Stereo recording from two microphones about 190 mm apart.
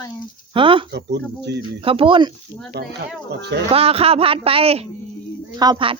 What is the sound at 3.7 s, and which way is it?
A child's voice, 30° right (ahead or behind).